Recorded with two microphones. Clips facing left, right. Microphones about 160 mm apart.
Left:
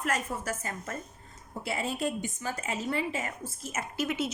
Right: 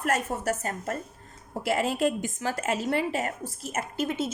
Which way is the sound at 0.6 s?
35° right (ahead or behind).